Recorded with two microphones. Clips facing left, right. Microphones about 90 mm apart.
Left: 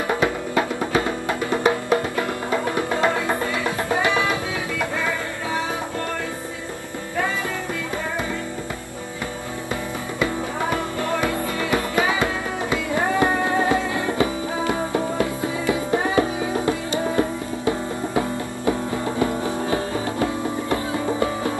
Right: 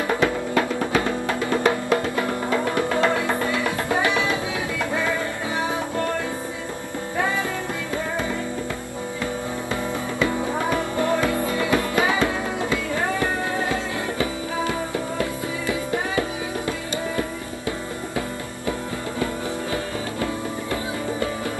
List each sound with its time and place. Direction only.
0.2 s music: 15° left (ahead or behind)
11.7 s music: 15° left (ahead or behind)